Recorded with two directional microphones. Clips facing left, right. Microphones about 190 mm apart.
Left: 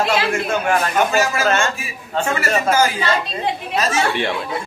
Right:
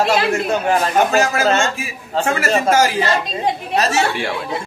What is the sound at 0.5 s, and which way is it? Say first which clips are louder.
Speech: right 2 dB; 30° right (ahead or behind).